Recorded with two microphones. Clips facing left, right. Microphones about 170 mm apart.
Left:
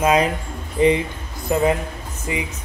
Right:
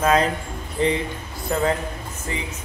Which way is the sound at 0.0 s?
15° left (ahead or behind).